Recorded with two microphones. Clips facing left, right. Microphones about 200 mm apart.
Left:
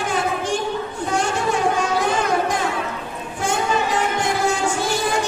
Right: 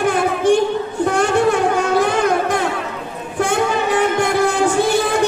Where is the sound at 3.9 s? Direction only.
60° right (ahead or behind).